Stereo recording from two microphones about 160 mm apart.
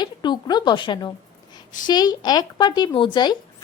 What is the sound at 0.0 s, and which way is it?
A woman's voice, 25° left (ahead or behind).